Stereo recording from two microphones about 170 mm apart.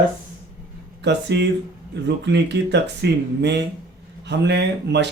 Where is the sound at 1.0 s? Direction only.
85° right.